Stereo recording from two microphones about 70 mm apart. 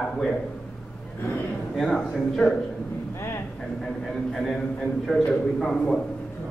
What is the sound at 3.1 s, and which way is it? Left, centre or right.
Speech, left.